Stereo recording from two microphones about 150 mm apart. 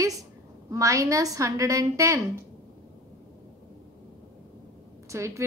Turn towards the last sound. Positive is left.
turn(degrees=-20)  # may be behind; listen again after turning